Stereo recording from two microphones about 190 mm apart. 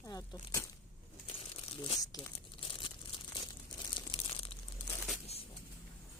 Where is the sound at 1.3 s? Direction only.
30° left (ahead or behind).